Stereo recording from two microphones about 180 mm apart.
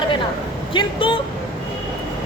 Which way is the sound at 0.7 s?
30° left (ahead or behind).